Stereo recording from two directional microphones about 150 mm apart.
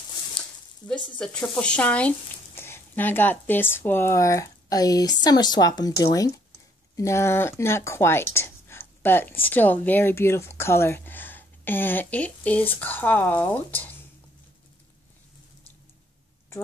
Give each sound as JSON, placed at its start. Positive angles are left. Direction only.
{"t": 1.1, "sound": "speech", "side_deg": 5}